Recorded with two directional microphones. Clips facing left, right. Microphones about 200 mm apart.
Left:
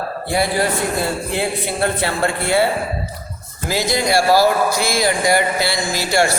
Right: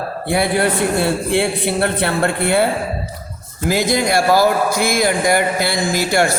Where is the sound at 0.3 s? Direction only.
60° right (ahead or behind).